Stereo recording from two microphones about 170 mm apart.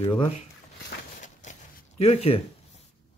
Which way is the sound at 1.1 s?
45° left (ahead or behind).